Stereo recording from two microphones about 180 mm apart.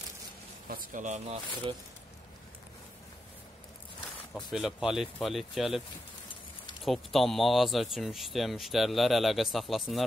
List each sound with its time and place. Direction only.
0.7 s speech: 50° right (ahead or behind)
4.3 s speech: centre (ahead or behind)
6.8 s speech: centre (ahead or behind)